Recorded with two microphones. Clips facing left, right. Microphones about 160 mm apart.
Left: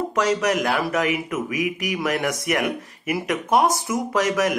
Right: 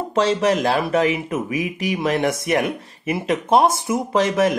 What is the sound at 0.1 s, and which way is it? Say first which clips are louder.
Speech: right 5 dB; 30° right (ahead or behind).